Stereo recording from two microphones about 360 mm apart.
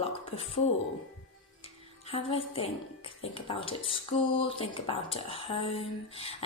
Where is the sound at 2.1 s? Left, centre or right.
Centre.